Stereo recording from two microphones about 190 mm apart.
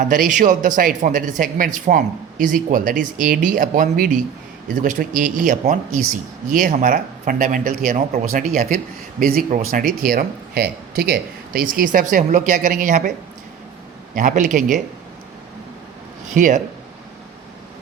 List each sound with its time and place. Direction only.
0.0 s speech: 45° right (ahead or behind)
14.2 s speech: 40° right (ahead or behind)
16.3 s speech: 40° right (ahead or behind)